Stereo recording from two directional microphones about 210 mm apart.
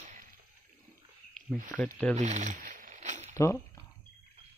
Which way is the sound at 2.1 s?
30° right (ahead or behind).